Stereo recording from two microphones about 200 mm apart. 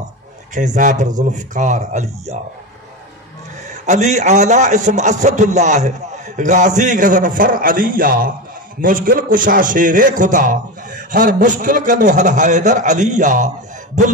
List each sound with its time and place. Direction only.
0.6 s a man's voice: 40° right (ahead or behind)
3.8 s a man's voice: 35° right (ahead or behind)